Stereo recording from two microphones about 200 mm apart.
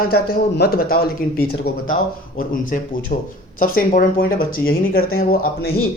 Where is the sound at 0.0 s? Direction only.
50° left (ahead or behind).